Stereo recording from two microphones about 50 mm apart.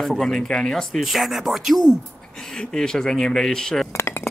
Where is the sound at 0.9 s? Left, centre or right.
Centre.